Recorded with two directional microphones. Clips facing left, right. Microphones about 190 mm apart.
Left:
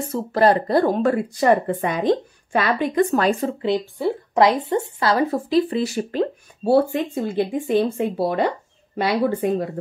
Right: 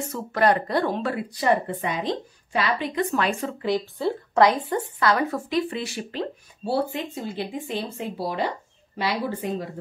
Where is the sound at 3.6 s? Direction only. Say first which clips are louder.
Even; 15° left (ahead or behind).